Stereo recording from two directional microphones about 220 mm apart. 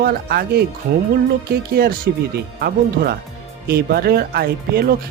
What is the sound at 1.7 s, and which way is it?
Speech, 45° right (ahead or behind).